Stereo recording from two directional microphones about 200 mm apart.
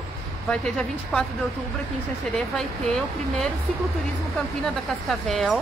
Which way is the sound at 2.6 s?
Centre (ahead or behind).